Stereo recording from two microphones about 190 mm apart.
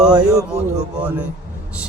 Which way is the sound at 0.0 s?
5° right (ahead or behind).